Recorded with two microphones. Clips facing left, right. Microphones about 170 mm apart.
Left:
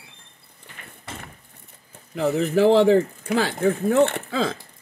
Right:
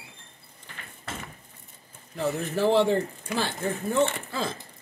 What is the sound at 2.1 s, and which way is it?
Speech, 90° left.